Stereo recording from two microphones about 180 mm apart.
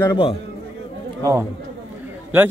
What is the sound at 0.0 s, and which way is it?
Speech, 25° left (ahead or behind).